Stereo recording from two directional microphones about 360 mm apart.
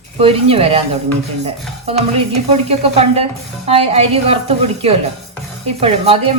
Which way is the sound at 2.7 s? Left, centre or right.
Centre.